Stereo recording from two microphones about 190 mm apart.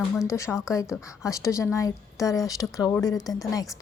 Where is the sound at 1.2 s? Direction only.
15° left (ahead or behind).